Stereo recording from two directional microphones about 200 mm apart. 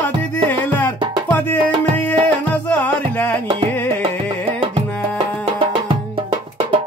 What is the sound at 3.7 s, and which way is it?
Music, 10° left (ahead or behind).